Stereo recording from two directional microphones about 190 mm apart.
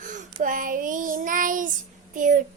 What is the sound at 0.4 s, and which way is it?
Child singing, 45° right (ahead or behind).